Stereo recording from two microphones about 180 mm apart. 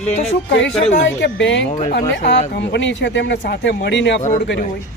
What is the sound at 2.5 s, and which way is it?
Speech, 75° left (ahead or behind).